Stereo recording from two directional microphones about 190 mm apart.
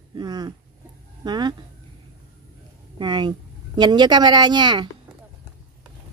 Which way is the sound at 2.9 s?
25° right (ahead or behind).